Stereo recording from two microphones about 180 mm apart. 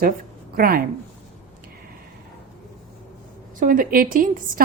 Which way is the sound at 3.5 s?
50° right (ahead or behind).